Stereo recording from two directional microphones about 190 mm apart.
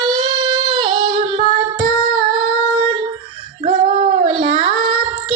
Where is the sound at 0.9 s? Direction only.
35° right (ahead or behind).